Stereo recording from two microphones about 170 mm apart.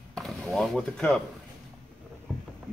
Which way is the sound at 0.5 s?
Centre (ahead or behind).